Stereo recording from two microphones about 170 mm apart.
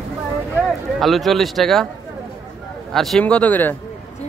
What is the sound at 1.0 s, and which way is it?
Speech, centre (ahead or behind).